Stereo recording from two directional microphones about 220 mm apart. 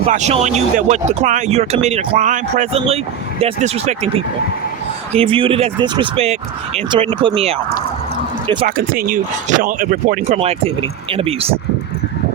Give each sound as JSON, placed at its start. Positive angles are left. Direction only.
{"t": 0.1, "sound": "speech", "side_deg": -30}
{"t": 8.6, "sound": "speech", "side_deg": -40}